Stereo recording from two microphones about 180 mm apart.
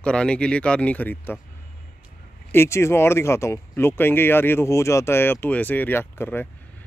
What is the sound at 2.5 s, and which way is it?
Speech, 15° left (ahead or behind).